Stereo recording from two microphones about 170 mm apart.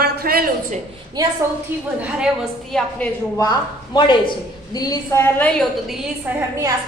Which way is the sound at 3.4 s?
25° left (ahead or behind).